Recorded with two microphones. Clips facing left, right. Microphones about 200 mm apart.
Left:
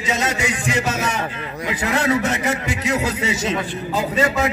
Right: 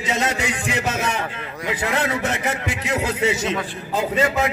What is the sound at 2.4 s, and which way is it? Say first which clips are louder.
A man's voice: left 3 dB; 55° right (ahead or behind).